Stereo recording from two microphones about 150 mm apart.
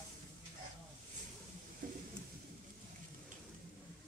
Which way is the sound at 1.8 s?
65° right (ahead or behind).